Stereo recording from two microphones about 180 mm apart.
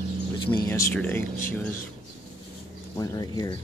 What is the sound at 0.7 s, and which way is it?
Speech, 15° left (ahead or behind).